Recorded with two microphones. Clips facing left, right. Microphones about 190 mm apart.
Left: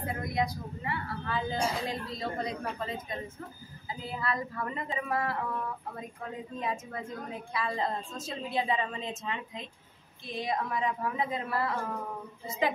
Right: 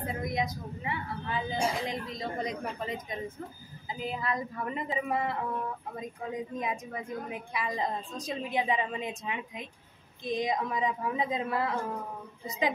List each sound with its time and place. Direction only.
0.0 s a sound: 20° right (ahead or behind)
3.9 s speech: 20° right (ahead or behind)
6.6 s a woman's voice: 15° right (ahead or behind)